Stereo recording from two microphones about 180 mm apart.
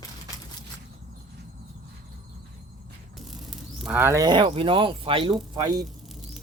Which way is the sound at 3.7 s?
5° right (ahead or behind).